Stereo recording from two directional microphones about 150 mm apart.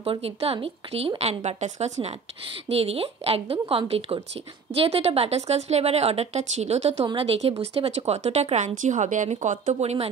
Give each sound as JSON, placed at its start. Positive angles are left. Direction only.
{"t": 0.0, "sound": "a woman's voice", "side_deg": -40}